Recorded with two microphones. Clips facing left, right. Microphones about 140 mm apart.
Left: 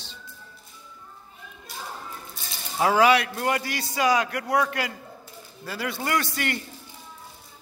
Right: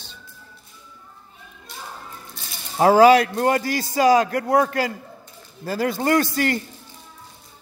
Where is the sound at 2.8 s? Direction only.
40° right (ahead or behind).